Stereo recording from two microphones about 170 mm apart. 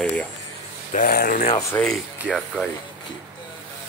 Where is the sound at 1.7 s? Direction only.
15° left (ahead or behind).